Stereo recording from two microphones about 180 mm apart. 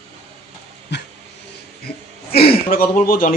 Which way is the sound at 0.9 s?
70° left (ahead or behind).